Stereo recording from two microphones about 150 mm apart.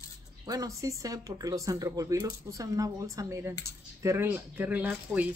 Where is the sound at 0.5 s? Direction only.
25° right (ahead or behind).